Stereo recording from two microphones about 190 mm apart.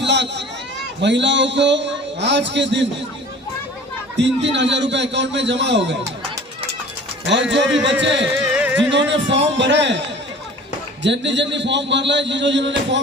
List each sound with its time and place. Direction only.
0.0 s a sound: 65° right (ahead or behind)
1.0 s a man's voice: 65° right (ahead or behind)
4.2 s a man's voice: 70° right (ahead or behind)
7.5 s a man's voice: 70° right (ahead or behind)
8.5 s music: 5° right (ahead or behind)
8.9 s a man's voice: 70° right (ahead or behind)
11.0 s a man's voice: 70° right (ahead or behind)